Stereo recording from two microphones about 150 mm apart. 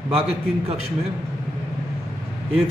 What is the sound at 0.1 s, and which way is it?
Speech, 40° right (ahead or behind).